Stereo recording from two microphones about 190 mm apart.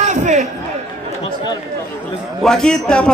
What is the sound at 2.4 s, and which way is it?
Speech, 5° left (ahead or behind).